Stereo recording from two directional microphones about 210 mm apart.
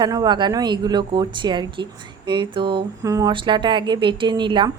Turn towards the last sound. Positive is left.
turn(degrees=-25)  # may be behind; listen again after turning